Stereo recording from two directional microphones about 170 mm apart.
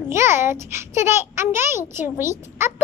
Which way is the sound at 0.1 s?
15° right (ahead or behind).